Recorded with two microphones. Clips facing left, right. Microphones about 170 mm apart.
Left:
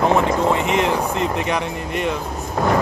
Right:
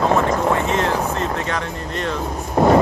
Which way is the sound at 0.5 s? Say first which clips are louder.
Left 1 dB; 15° left (ahead or behind).